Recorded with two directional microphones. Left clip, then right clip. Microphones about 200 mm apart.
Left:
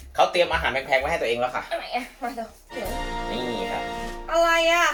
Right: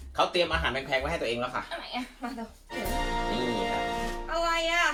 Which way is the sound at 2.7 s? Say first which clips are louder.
Right 1 dB; centre (ahead or behind).